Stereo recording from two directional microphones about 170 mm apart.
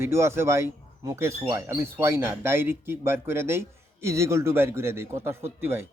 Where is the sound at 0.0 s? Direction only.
15° right (ahead or behind).